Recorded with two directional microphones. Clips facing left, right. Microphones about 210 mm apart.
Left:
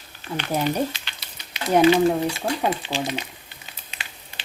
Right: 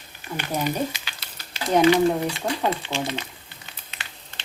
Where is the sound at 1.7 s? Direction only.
20° left (ahead or behind).